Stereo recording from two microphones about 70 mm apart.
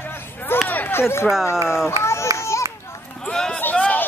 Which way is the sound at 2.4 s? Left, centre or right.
Left.